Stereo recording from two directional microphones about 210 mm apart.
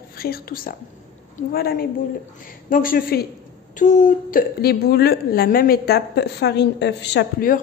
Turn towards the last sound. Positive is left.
turn(degrees=50)  # may be behind; listen again after turning